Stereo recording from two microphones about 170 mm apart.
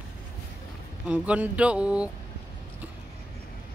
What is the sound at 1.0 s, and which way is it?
Speech, 5° right (ahead or behind).